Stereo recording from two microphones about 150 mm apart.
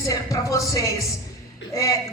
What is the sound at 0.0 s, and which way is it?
Speech, 20° left (ahead or behind).